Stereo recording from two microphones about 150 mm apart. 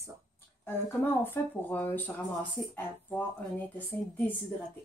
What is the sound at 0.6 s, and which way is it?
Speech, 15° left (ahead or behind).